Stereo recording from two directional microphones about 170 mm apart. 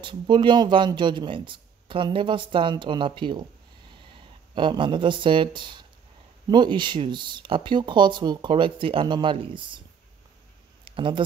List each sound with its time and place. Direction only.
0.0 s speech: 30° right (ahead or behind)
4.6 s speech: 30° right (ahead or behind)
10.9 s speech: 30° right (ahead or behind)